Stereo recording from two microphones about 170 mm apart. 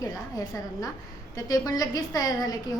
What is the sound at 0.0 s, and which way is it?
A woman's voice, 20° left (ahead or behind).